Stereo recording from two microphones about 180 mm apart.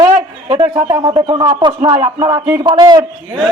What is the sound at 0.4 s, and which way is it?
A man's voice, 30° right (ahead or behind).